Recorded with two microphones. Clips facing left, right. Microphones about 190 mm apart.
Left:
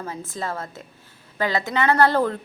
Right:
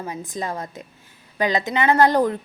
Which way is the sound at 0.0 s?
15° right (ahead or behind).